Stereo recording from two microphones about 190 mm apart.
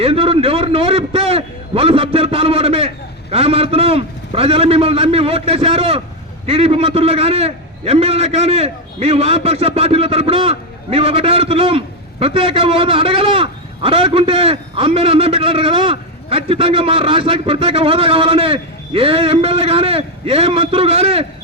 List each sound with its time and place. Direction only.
0.0 s a man's voice: 30° right (ahead or behind)